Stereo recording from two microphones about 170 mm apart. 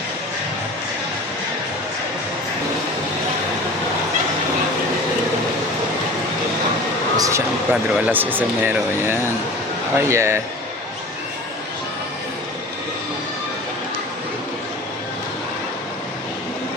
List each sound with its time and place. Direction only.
7.2 s speech: 15° right (ahead or behind)